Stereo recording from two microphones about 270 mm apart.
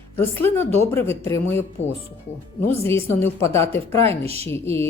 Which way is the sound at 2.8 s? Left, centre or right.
Centre.